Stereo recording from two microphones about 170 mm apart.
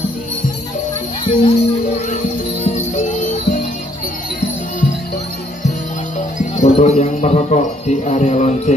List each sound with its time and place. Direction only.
1.2 s music: 40° left (ahead or behind)
6.1 s speech: 45° left (ahead or behind)